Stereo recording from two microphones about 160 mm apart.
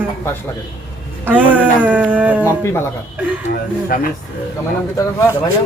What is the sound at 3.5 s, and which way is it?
Speech, 60° left (ahead or behind).